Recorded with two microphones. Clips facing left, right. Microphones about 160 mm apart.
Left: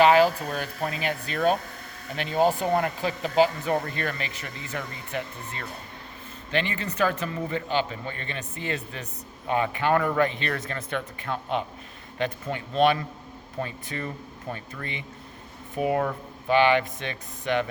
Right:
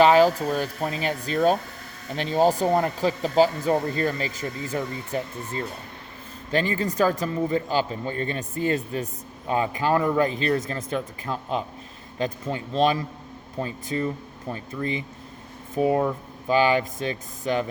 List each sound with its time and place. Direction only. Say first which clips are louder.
0.0 s speech: right 2 dB; 35° right (ahead or behind)